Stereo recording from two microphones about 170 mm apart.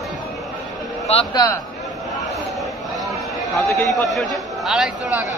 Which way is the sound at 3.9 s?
Centre (ahead or behind).